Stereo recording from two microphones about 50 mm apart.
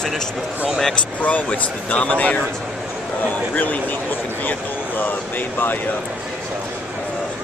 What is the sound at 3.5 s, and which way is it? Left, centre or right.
Speech, left.